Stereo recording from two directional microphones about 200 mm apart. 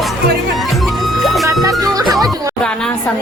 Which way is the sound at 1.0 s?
Centre (ahead or behind).